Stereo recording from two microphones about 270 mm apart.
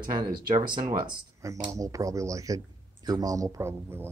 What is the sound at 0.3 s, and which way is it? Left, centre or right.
Speech, right.